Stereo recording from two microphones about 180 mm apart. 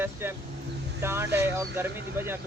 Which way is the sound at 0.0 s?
10° right (ahead or behind).